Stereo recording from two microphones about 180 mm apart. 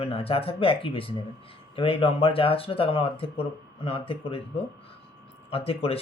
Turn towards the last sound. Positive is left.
turn(degrees=30)  # may be behind; listen again after turning